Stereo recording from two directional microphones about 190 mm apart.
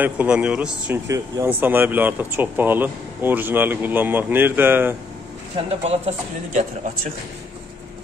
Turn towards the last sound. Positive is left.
turn(degrees=-40)  # may be behind; listen again after turning